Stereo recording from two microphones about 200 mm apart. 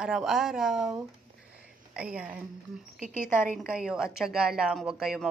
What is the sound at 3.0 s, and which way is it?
Speech, 40° right (ahead or behind).